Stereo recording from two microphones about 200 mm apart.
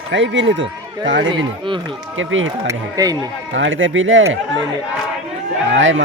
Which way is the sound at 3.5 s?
70° right (ahead or behind).